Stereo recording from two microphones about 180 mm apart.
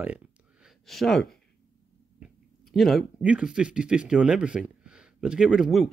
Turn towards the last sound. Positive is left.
turn(degrees=0)  # may be behind; listen again after turning